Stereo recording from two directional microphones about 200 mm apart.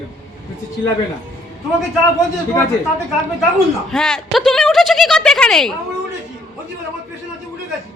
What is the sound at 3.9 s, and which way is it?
A woman's voice, 5° left (ahead or behind).